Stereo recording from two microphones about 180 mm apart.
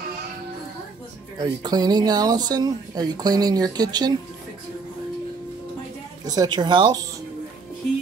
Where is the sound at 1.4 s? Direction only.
20° right (ahead or behind).